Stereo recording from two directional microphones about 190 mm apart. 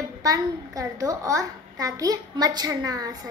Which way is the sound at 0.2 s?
20° right (ahead or behind).